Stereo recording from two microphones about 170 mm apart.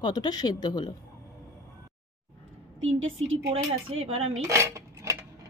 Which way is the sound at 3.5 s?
35° right (ahead or behind).